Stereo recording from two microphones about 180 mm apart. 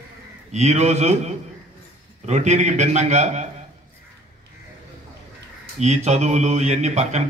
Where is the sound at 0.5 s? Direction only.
40° right (ahead or behind).